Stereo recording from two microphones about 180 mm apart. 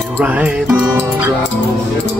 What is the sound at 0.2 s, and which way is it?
Speech, 10° right (ahead or behind).